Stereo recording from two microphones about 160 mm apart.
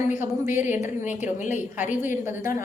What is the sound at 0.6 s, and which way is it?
Speech, 10° right (ahead or behind).